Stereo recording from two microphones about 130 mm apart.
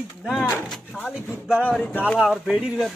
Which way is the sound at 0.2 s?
5° right (ahead or behind).